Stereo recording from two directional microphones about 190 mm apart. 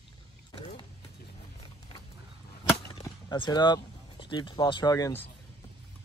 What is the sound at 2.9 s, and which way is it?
Speech, 25° left (ahead or behind).